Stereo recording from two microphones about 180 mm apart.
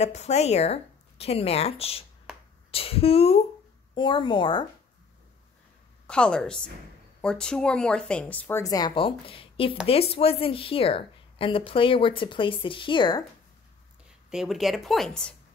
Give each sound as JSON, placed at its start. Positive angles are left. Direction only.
{"t": 0.0, "sound": "a woman's voice", "side_deg": 40}
{"t": 6.0, "sound": "a woman's voice", "side_deg": 5}
{"t": 14.3, "sound": "speech", "side_deg": 0}